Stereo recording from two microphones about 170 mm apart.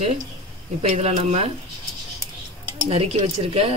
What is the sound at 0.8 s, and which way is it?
Speech, 40° right (ahead or behind).